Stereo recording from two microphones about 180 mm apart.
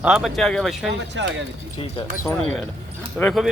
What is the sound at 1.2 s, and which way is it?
Speech, 90° right.